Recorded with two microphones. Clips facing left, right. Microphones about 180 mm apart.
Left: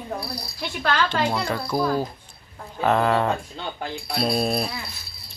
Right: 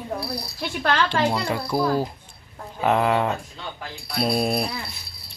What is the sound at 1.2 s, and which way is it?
Speech, 5° right (ahead or behind).